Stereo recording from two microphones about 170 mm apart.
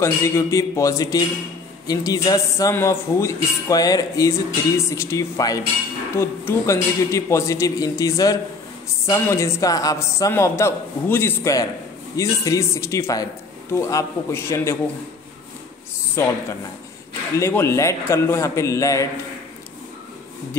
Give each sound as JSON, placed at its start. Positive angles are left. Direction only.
{"t": 0.0, "sound": "a man's voice", "side_deg": 20}
{"t": 16.2, "sound": "a man's voice", "side_deg": 15}
{"t": 17.4, "sound": "a man's voice", "side_deg": 15}